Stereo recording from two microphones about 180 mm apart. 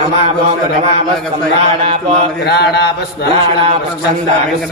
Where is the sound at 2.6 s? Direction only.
65° left (ahead or behind).